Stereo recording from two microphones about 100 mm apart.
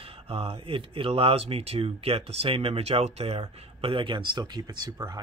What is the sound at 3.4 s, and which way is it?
Speech, 55° right (ahead or behind).